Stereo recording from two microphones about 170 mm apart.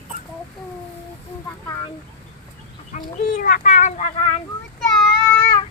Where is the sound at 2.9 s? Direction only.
50° left (ahead or behind).